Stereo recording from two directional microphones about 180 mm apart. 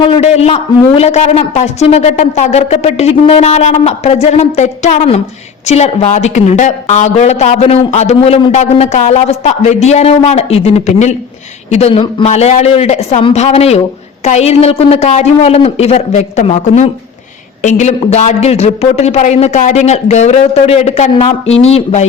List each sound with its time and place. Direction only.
0.0 s a man's voice: 35° left (ahead or behind)